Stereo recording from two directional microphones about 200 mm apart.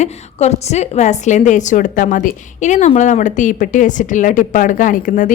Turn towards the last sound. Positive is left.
turn(degrees=40)  # may be behind; listen again after turning